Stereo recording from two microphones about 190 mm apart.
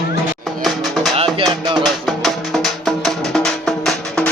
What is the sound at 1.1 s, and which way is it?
Music, 30° right (ahead or behind).